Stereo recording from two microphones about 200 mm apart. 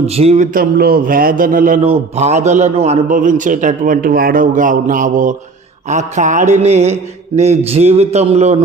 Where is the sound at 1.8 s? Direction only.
30° right (ahead or behind).